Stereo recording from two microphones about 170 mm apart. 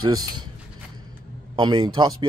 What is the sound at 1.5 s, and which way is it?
Speech, 30° right (ahead or behind).